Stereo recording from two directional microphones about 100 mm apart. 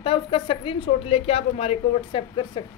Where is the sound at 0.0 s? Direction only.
65° left (ahead or behind).